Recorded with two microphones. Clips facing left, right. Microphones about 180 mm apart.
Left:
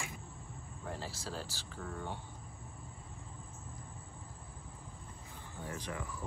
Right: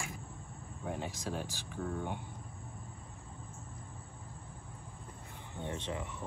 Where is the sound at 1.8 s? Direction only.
5° right (ahead or behind).